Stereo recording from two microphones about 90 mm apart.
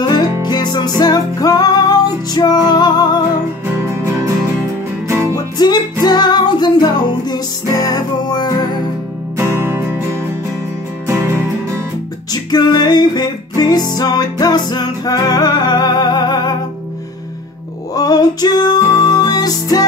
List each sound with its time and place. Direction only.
0.4 s music: 50° left (ahead or behind)
3.7 s music: 30° right (ahead or behind)
5.3 s music: 50° left (ahead or behind)
9.4 s music: 25° right (ahead or behind)
12.3 s music: 50° left (ahead or behind)
17.9 s music: 45° left (ahead or behind)